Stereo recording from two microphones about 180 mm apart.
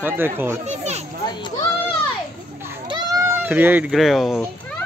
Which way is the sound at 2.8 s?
25° right (ahead or behind).